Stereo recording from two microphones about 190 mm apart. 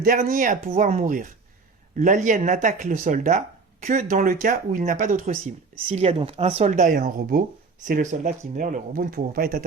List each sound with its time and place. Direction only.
0.0 s speech: 45° right (ahead or behind)